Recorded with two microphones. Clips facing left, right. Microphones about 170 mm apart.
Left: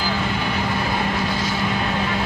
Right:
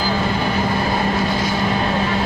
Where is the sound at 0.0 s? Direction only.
35° right (ahead or behind).